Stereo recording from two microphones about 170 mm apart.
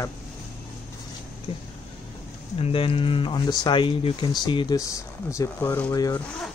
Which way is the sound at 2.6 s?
30° left (ahead or behind).